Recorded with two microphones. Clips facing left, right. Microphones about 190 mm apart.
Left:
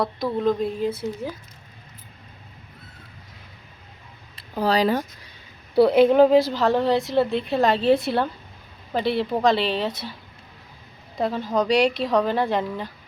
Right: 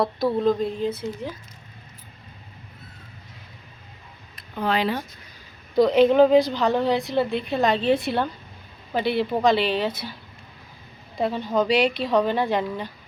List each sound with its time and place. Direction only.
0.0 s a woman's voice: centre (ahead or behind)
4.4 s speech: 35° left (ahead or behind)
5.7 s a woman's voice: 10° left (ahead or behind)
11.2 s a woman's voice: centre (ahead or behind)